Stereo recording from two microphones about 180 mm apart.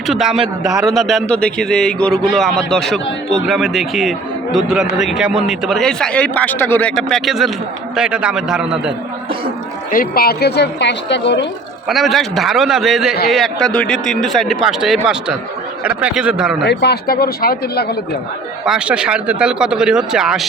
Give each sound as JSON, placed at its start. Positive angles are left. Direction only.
{"t": 0.1, "sound": "a man's voice", "side_deg": 0}
{"t": 9.9, "sound": "a woman's voice", "side_deg": 55}
{"t": 11.9, "sound": "a man's voice", "side_deg": 0}
{"t": 16.6, "sound": "speech", "side_deg": 65}
{"t": 18.6, "sound": "a man's voice", "side_deg": -5}